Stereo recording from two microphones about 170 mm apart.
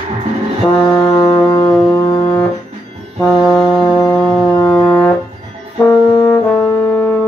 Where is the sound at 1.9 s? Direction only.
20° left (ahead or behind).